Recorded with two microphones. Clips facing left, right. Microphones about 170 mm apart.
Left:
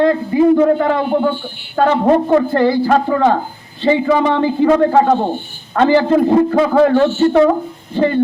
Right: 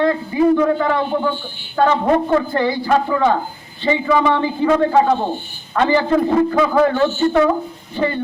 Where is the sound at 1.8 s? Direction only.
35° left (ahead or behind).